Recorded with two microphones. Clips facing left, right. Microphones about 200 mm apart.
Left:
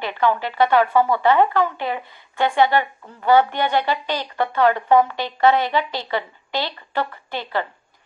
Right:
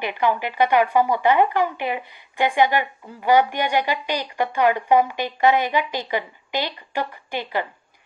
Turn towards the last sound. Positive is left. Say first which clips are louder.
# even
turn(degrees=-15)  # may be behind; listen again after turning